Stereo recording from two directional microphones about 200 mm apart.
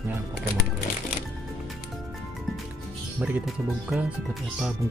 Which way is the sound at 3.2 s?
5° right (ahead or behind).